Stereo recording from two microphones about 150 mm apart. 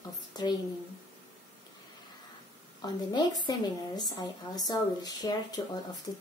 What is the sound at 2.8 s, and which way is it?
Speech, 30° left (ahead or behind).